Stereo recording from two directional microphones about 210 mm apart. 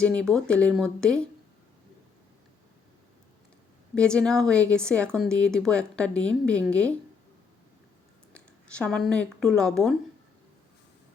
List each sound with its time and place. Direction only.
0.0 s speech: 5° left (ahead or behind)
3.9 s speech: 5° left (ahead or behind)
8.8 s speech: 5° left (ahead or behind)